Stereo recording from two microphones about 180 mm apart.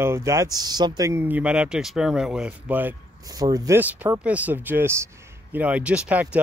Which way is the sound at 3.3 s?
20° right (ahead or behind).